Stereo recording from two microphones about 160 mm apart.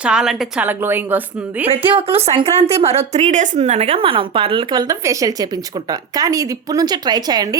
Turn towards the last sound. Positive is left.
turn(degrees=-25)  # may be behind; listen again after turning